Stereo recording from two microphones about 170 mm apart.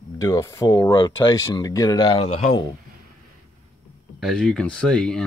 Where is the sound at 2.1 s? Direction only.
35° left (ahead or behind).